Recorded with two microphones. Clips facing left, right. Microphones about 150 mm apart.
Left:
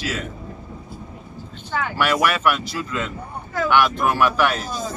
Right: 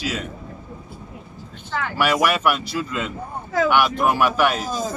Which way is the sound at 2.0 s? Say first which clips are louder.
Right 1 dB; 10° right (ahead or behind).